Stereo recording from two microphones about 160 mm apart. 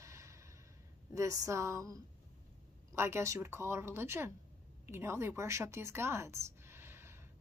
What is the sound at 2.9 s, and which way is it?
A woman's voice, 15° right (ahead or behind).